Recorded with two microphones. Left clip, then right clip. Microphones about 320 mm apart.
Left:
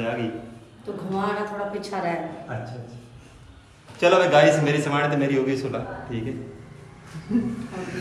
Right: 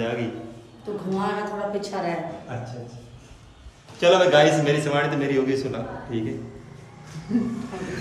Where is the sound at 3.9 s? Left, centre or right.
Centre.